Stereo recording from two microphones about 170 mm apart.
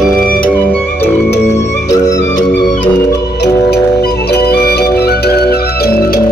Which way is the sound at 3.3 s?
70° left (ahead or behind).